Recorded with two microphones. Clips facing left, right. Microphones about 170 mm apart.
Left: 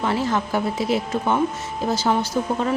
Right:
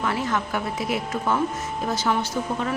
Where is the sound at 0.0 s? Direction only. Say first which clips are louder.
Left 3 dB; 30° left (ahead or behind).